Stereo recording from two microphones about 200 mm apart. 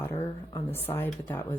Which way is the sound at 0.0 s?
10° left (ahead or behind).